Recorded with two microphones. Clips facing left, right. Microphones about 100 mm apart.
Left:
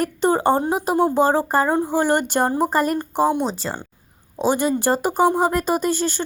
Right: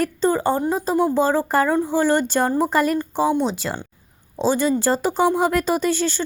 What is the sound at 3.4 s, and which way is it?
Speech, 35° left (ahead or behind).